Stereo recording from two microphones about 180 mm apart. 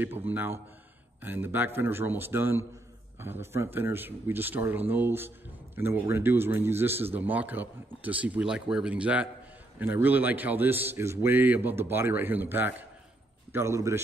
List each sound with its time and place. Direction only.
0.3 s a man's voice: 10° right (ahead or behind)